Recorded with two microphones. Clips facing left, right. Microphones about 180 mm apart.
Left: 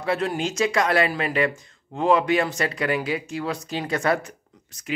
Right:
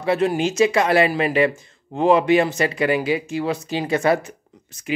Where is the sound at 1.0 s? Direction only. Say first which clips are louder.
Right 5 dB; 25° right (ahead or behind).